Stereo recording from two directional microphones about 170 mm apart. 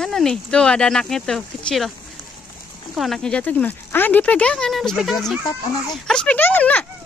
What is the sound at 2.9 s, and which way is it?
A child's voice, centre (ahead or behind).